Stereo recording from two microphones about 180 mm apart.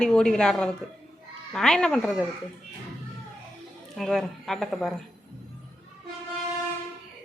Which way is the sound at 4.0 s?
5° left (ahead or behind).